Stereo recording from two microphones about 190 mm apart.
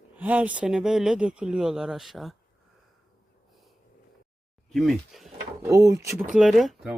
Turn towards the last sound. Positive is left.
turn(degrees=0)  # may be behind; listen again after turning